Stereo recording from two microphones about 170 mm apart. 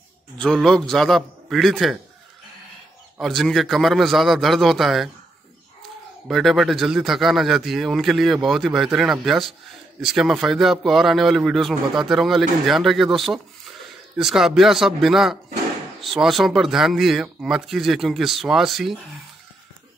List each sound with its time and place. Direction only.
0.4 s a man's voice: 5° left (ahead or behind)
3.2 s a man's voice: centre (ahead or behind)
6.2 s a man's voice: centre (ahead or behind)